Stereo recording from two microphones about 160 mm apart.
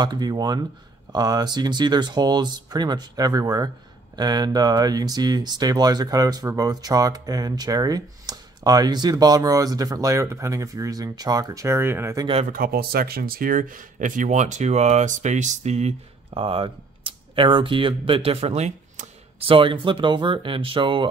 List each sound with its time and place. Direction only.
0.0 s speech: 25° right (ahead or behind)
12.4 s speech: 65° right (ahead or behind); by 21.1 s 30° right (ahead or behind)